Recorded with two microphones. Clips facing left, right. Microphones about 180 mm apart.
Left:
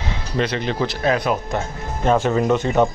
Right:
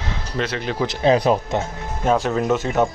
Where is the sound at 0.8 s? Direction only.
30° right (ahead or behind).